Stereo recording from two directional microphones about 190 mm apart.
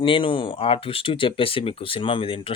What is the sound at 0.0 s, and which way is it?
A man's voice, 25° left (ahead or behind).